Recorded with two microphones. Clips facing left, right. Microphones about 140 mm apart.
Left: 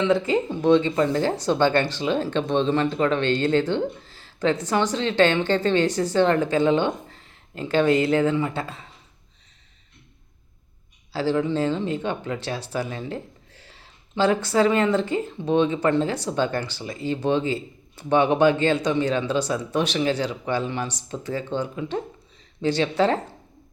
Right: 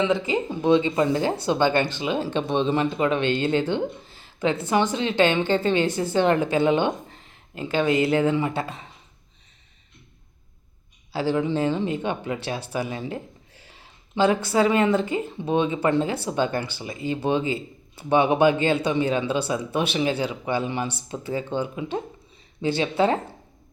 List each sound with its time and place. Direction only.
0.0 s speech: 5° right (ahead or behind)
11.1 s speech: 15° right (ahead or behind)
14.2 s speech: 20° right (ahead or behind)